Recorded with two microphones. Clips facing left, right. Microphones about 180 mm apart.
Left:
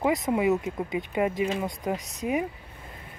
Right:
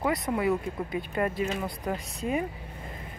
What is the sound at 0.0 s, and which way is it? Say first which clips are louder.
Speech: left 3 dB; 20° left (ahead or behind).